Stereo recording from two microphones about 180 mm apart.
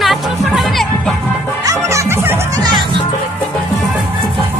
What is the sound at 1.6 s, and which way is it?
Music, 15° right (ahead or behind).